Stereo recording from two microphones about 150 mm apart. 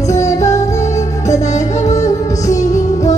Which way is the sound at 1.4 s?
50° left (ahead or behind).